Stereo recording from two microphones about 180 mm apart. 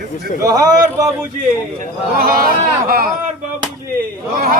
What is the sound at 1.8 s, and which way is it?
A man's voice, 55° right (ahead or behind).